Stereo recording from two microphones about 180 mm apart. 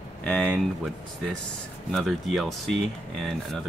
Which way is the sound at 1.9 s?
Centre (ahead or behind).